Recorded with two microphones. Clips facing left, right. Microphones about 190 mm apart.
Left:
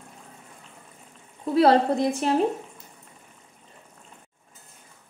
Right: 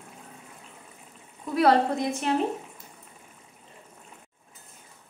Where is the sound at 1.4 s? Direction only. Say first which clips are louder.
Left 3 dB; 30° left (ahead or behind).